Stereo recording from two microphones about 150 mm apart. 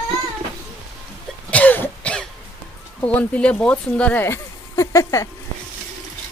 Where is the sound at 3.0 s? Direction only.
10° left (ahead or behind).